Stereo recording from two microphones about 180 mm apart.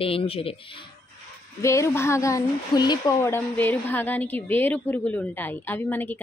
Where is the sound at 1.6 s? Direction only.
15° left (ahead or behind).